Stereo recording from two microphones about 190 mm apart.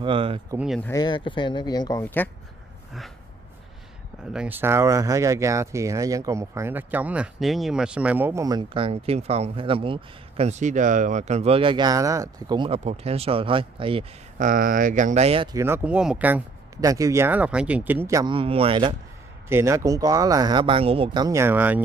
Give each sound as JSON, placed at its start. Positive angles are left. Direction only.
{"t": 0.0, "sound": "speech", "side_deg": -30}
{"t": 0.6, "sound": "speech", "side_deg": 0}
{"t": 0.8, "sound": "speech", "side_deg": 20}
{"t": 4.3, "sound": "speech", "side_deg": -5}
{"t": 14.4, "sound": "speech", "side_deg": -45}
{"t": 15.5, "sound": "speech", "side_deg": -10}
{"t": 19.5, "sound": "speech", "side_deg": -15}